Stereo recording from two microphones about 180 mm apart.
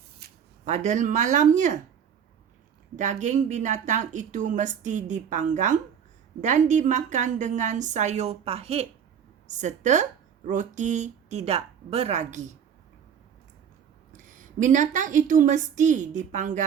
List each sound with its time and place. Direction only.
0.2 s a sound: 60° right (ahead or behind)
0.6 s speech: 40° right (ahead or behind)
2.9 s speech: 40° right (ahead or behind)
14.1 s speech: 45° right (ahead or behind)